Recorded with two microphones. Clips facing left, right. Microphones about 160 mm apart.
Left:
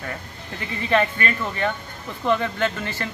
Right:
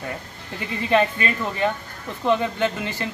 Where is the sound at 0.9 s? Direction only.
15° right (ahead or behind).